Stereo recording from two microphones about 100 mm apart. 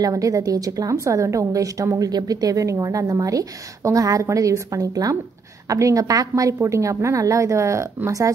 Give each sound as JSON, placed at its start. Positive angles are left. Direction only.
{"t": 0.0, "sound": "a woman's voice", "side_deg": -35}